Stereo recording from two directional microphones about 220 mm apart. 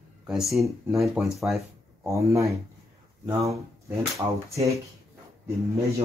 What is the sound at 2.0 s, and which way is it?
Speech, 15° right (ahead or behind).